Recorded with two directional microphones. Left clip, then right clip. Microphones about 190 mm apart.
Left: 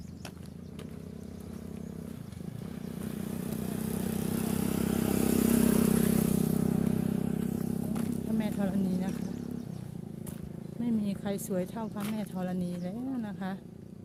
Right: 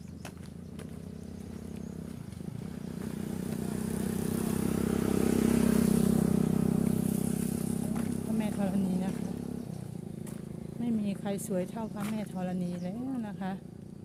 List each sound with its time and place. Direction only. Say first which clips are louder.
2.9 s vehicle: even; 30° left (ahead or behind)
6.7 s vehicle: even; centre (ahead or behind)
6.9 s vehicle: even; 15° right (ahead or behind)
7.9 s a sound: even; 5° left (ahead or behind)
10.8 s speech: left 1 dB; 5° left (ahead or behind)